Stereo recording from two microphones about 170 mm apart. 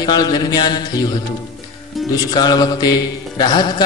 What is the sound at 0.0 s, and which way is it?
Speech, 25° left (ahead or behind).